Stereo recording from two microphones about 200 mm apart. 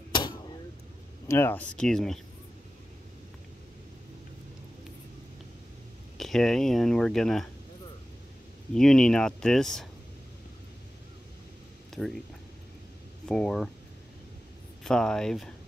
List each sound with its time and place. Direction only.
0.1 s vehicle: 20° left (ahead or behind)
1.2 s speech: 10° left (ahead or behind)
6.1 s speech: centre (ahead or behind)
8.7 s speech: centre (ahead or behind)
11.9 s speech: centre (ahead or behind)
13.3 s speech: 5° left (ahead or behind)
14.8 s speech: 5° left (ahead or behind)